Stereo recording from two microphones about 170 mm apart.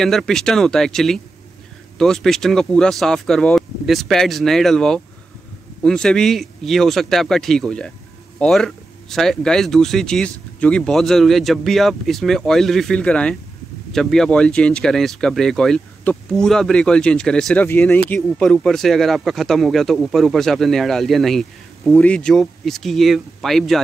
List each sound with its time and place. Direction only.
0.0 s speech: centre (ahead or behind)